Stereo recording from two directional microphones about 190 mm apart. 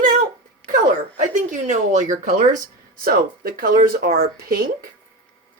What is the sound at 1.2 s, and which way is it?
Speech, 40° right (ahead or behind).